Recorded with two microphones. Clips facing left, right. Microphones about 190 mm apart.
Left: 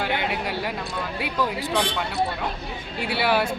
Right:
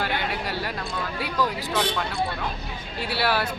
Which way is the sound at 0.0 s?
15° left (ahead or behind).